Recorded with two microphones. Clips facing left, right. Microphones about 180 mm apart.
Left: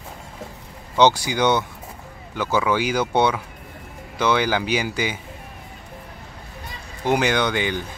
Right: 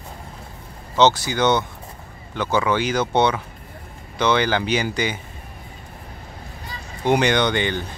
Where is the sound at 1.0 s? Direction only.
15° left (ahead or behind).